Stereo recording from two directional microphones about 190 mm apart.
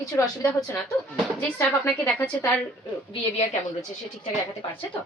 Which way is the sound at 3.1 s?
25° left (ahead or behind).